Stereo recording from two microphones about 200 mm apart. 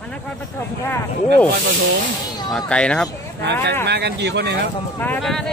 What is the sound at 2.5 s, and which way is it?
Speech, 5° left (ahead or behind).